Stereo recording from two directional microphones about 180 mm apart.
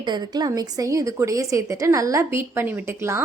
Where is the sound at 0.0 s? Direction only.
25° right (ahead or behind).